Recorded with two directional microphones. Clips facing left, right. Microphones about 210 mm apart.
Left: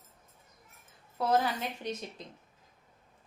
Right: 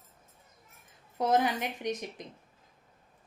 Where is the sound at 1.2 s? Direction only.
20° right (ahead or behind).